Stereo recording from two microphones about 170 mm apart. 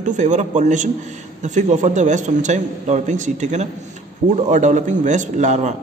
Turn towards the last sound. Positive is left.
turn(degrees=-45)  # may be behind; listen again after turning